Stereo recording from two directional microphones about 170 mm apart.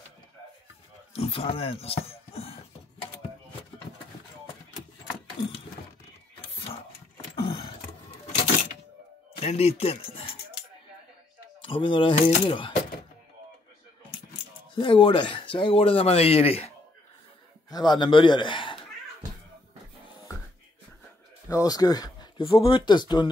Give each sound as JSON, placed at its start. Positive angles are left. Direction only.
{"t": 1.1, "sound": "speech", "side_deg": 35}
{"t": 6.5, "sound": "ratchet", "side_deg": 35}
{"t": 7.4, "sound": "a sound", "side_deg": 30}
{"t": 9.4, "sound": "speech", "side_deg": 35}
{"t": 11.6, "sound": "speech", "side_deg": 30}
{"t": 14.8, "sound": "speech", "side_deg": 30}
{"t": 17.6, "sound": "a man's voice", "side_deg": 25}
{"t": 21.5, "sound": "speech", "side_deg": 20}